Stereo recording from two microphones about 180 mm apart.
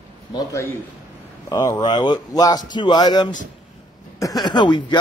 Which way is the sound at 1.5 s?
20° left (ahead or behind).